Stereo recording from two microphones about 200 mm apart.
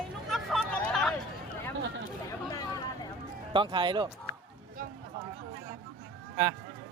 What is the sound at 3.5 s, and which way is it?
Speech, 25° right (ahead or behind).